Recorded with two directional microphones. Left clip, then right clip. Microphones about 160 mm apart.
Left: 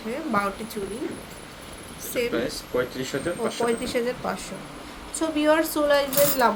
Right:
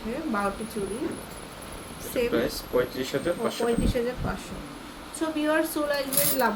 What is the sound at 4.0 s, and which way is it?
Speech, 30° left (ahead or behind).